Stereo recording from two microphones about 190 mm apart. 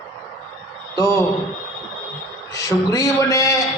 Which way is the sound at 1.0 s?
15° left (ahead or behind).